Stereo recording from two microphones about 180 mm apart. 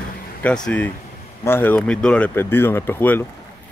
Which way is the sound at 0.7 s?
10° left (ahead or behind).